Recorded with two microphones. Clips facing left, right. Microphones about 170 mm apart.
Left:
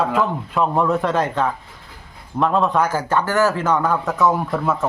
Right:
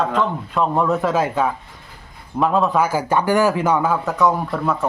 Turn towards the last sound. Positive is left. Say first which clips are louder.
# left 1 dB
turn(degrees=0)  # may be behind; listen again after turning